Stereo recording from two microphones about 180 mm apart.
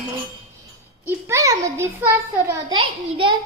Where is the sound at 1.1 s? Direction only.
15° right (ahead or behind).